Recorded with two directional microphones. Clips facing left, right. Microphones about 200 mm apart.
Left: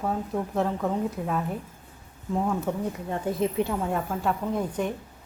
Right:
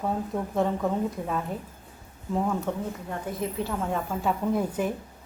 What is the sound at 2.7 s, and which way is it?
A woman's voice, 10° left (ahead or behind).